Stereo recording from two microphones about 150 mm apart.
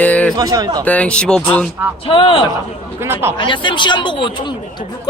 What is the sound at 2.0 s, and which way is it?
Speech, 40° left (ahead or behind).